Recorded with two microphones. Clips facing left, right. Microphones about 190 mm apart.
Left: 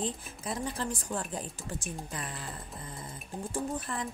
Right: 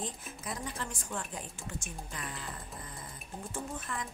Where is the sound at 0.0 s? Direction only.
30° left (ahead or behind).